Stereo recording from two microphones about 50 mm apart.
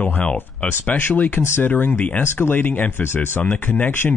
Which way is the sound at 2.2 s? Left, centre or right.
Left.